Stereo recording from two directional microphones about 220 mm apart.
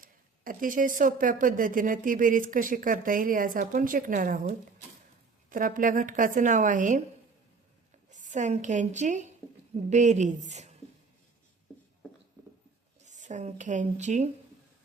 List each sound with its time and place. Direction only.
0.0 s speech: 40° right (ahead or behind)
8.1 s a woman's voice: 35° right (ahead or behind)
9.4 s a sound: 5° left (ahead or behind)
9.7 s speech: 30° right (ahead or behind)
13.1 s a woman's voice: 35° right (ahead or behind)